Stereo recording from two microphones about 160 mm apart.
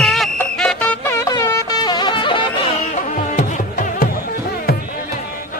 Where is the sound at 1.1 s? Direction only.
20° left (ahead or behind).